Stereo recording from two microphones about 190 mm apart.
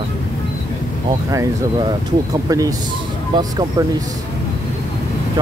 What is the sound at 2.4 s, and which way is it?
Speech, 20° right (ahead or behind).